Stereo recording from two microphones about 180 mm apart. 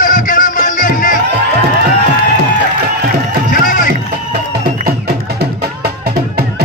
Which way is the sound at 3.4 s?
45° left (ahead or behind).